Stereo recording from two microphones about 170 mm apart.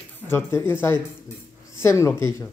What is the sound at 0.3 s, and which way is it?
Speech, 15° left (ahead or behind).